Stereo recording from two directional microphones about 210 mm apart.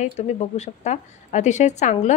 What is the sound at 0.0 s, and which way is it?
Speech, 35° left (ahead or behind).